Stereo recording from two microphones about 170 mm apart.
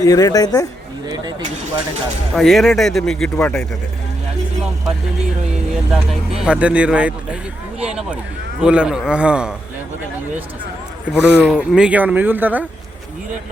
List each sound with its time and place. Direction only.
0.0 s speech: 20° left (ahead or behind)
1.0 s speech: 25° right (ahead or behind)
2.3 s speech: centre (ahead or behind)
5.7 s speech: 5° right (ahead or behind)
8.6 s speech: 5° right (ahead or behind)
11.1 s speech: 10° right (ahead or behind)